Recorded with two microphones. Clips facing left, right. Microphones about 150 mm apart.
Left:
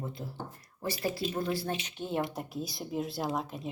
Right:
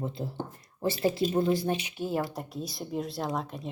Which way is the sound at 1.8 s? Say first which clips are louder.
Right 2 dB; 5° right (ahead or behind).